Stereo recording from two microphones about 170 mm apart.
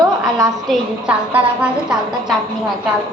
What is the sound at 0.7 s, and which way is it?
A woman's voice, 5° right (ahead or behind).